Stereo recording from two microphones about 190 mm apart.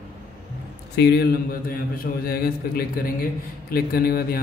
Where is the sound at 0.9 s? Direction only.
60° left (ahead or behind).